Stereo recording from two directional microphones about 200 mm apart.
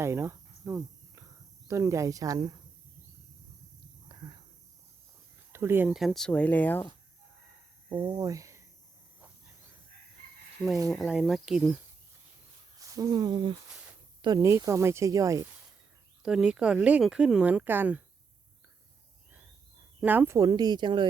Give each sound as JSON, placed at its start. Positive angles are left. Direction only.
{"t": 0.0, "sound": "cricket", "side_deg": -15}
{"t": 1.6, "sound": "speech", "side_deg": -15}
{"t": 4.1, "sound": "a sound", "side_deg": -25}
{"t": 5.5, "sound": "speech", "side_deg": -10}
{"t": 7.9, "sound": "speech", "side_deg": -20}
{"t": 10.8, "sound": "speech", "side_deg": 0}
{"t": 12.8, "sound": "speech", "side_deg": -15}
{"t": 16.2, "sound": "speech", "side_deg": -5}
{"t": 20.0, "sound": "speech", "side_deg": -10}